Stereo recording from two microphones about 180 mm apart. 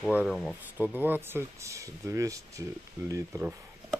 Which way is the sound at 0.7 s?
10° right (ahead or behind).